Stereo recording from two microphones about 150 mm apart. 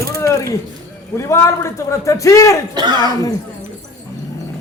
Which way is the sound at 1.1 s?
20° left (ahead or behind).